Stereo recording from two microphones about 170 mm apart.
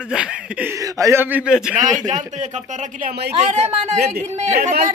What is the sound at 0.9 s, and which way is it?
Speech, 15° right (ahead or behind).